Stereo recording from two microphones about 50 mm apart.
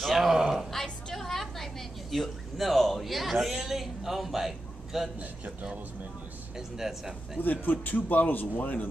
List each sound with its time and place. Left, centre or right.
0.0 s a sound: centre
1.1 s a woman's voice: centre
5.2 s a man's voice: right
6.5 s a man's voice: centre
7.3 s a man's voice: left